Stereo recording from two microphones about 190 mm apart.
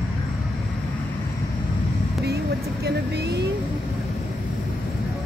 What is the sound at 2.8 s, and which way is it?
Speech, 60° right (ahead or behind).